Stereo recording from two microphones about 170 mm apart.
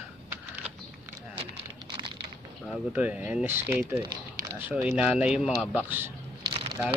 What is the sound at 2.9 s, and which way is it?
Speech, 10° right (ahead or behind).